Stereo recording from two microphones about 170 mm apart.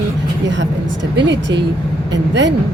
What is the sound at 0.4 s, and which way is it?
A woman's voice, 90° right.